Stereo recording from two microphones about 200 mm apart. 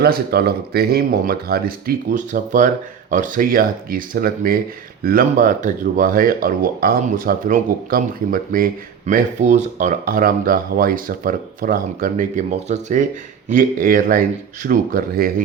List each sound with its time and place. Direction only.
0.0 s speech: 50° right (ahead or behind)